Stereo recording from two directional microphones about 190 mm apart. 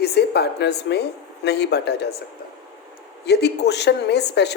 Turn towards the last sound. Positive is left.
turn(degrees=60)  # may be behind; listen again after turning